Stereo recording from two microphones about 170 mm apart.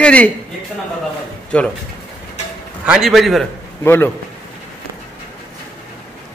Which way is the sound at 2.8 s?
5° right (ahead or behind).